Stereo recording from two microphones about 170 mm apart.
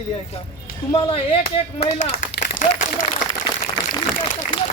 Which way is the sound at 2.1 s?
60° left (ahead or behind).